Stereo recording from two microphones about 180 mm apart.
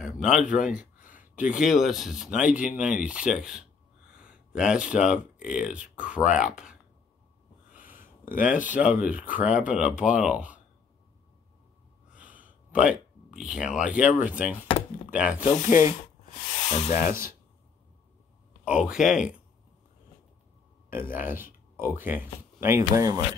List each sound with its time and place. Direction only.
0.0 s a man's voice: 5° right (ahead or behind)
7.9 s a sound: 50° left (ahead or behind)
8.4 s speech: 10° right (ahead or behind)
12.2 s a sound: 5° right (ahead or behind)
13.9 s speech: 5° right (ahead or behind)
16.6 s rub: 40° left (ahead or behind)
18.6 s speech: 5° right (ahead or behind)
21.1 s speech: 50° left (ahead or behind)
21.7 s speech: 10° right (ahead or behind)